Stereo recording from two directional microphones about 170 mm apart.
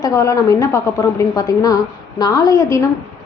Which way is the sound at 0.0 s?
20° left (ahead or behind).